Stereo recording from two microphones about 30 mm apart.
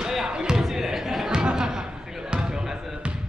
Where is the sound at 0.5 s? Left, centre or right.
Centre.